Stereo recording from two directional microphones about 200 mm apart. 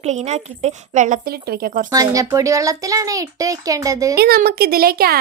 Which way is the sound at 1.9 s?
15° right (ahead or behind).